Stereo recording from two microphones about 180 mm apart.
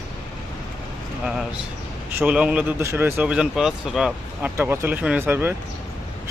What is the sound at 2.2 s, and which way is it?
Speech, 5° right (ahead or behind).